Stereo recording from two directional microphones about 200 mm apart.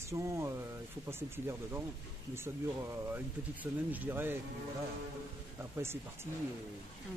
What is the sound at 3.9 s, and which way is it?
Speech, 10° right (ahead or behind).